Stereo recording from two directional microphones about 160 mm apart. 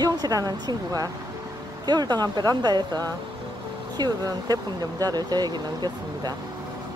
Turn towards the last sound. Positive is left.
turn(degrees=-25)  # may be behind; listen again after turning